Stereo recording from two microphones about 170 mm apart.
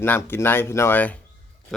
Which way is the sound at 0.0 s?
10° left (ahead or behind).